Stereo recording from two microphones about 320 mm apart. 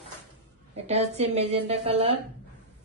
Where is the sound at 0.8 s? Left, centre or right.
Centre.